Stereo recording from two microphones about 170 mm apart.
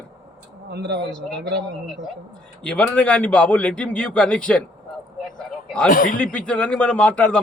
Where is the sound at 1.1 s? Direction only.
5° left (ahead or behind).